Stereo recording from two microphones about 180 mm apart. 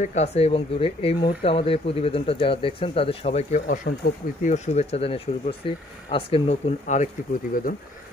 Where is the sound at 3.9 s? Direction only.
60° left (ahead or behind).